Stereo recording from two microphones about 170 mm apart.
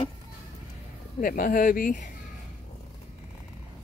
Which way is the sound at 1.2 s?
55° left (ahead or behind).